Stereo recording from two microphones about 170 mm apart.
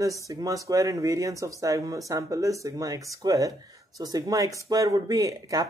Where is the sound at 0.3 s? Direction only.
20° right (ahead or behind).